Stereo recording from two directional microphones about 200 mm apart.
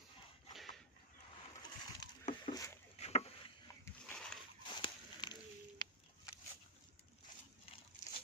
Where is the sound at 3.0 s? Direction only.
30° left (ahead or behind).